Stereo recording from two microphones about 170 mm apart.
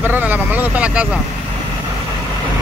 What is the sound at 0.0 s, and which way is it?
Vehicle, 10° right (ahead or behind).